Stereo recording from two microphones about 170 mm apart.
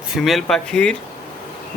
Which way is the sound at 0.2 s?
Centre (ahead or behind).